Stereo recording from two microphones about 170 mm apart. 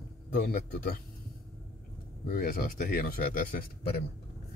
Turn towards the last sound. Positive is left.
turn(degrees=60)  # may be behind; listen again after turning